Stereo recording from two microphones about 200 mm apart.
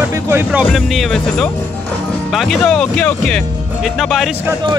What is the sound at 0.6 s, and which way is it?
Speech, centre (ahead or behind).